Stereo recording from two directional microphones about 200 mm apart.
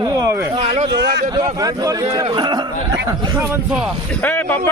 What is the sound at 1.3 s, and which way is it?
Speech, 20° right (ahead or behind).